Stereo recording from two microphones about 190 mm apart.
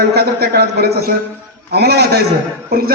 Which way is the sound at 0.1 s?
60° right (ahead or behind).